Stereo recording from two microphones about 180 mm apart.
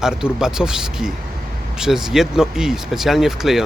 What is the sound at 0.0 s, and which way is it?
Speech, 5° right (ahead or behind).